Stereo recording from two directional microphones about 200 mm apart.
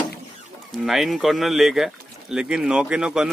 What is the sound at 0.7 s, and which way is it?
Speech, centre (ahead or behind).